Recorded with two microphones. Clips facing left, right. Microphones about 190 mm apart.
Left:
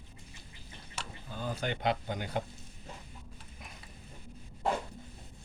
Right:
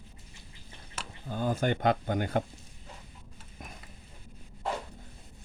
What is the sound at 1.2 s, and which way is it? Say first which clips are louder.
Speech: right 7 dB; 50° right (ahead or behind).